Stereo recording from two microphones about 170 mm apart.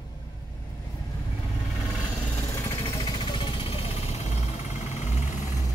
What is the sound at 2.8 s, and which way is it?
Vehicle, 30° left (ahead or behind).